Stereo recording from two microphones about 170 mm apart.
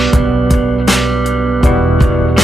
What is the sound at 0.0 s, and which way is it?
Music, centre (ahead or behind).